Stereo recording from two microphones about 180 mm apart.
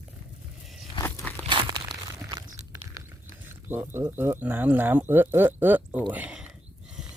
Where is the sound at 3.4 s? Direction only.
10° right (ahead or behind).